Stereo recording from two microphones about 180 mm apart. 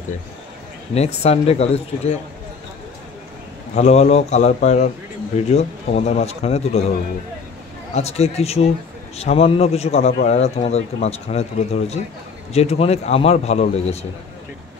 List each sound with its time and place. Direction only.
0.9 s speech: 35° left (ahead or behind)
3.7 s speech: 40° left (ahead or behind)
7.9 s speech: 35° left (ahead or behind)